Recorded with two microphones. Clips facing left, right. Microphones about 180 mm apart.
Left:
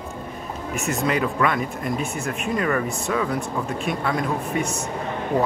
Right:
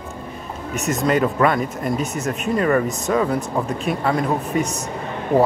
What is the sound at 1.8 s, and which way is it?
Speech, centre (ahead or behind).